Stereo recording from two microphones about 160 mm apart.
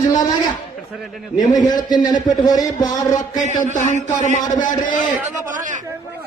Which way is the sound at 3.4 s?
50° left (ahead or behind).